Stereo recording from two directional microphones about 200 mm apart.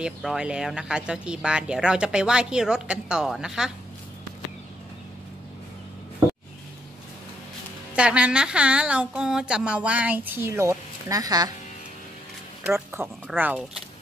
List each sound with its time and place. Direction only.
0.0 s speech: 5° right (ahead or behind)
7.9 s speech: 5° right (ahead or behind)
12.6 s speech: 10° right (ahead or behind)